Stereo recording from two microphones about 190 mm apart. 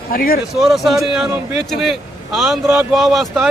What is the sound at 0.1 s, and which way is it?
Speech, 50° left (ahead or behind).